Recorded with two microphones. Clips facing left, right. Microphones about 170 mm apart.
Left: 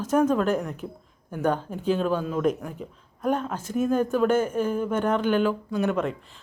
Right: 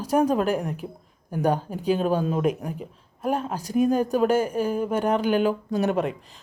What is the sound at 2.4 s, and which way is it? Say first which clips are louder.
A woman's voice: even; 10° right (ahead or behind).